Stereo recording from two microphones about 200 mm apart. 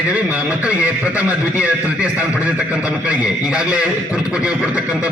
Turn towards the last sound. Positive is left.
turn(degrees=-5)  # may be behind; listen again after turning